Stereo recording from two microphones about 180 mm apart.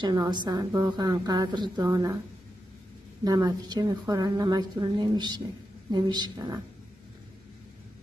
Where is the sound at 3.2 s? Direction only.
20° right (ahead or behind).